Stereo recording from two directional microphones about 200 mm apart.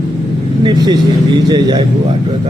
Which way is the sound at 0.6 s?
20° right (ahead or behind).